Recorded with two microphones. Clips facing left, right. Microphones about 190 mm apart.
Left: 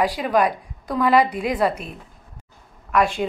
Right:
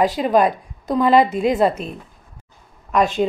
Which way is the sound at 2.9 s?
25° right (ahead or behind).